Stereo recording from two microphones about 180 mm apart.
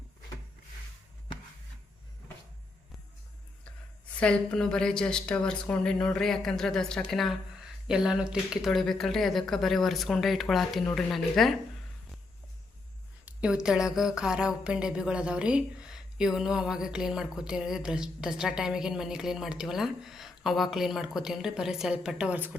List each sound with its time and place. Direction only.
4.2 s speech: 5° left (ahead or behind)
13.2 s speech: 5° right (ahead or behind)